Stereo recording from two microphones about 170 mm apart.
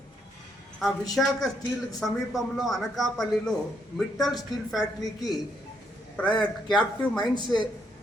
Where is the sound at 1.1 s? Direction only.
Centre (ahead or behind).